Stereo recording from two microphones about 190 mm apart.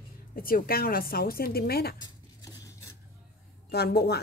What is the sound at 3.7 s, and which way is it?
Speech, 55° left (ahead or behind).